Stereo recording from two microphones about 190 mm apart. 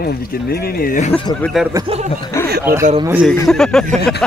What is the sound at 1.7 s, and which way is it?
Speech, 30° right (ahead or behind).